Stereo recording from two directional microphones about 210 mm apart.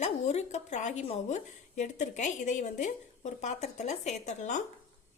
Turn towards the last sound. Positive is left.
turn(degrees=35)  # may be behind; listen again after turning